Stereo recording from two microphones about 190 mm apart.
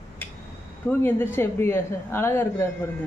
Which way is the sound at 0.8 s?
10° left (ahead or behind).